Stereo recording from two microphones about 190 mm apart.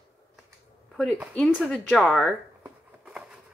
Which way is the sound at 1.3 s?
5° left (ahead or behind).